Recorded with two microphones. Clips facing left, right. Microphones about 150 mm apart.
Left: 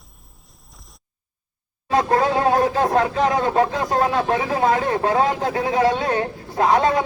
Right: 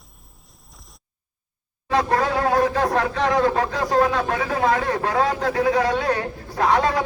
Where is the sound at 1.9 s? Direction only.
25° left (ahead or behind).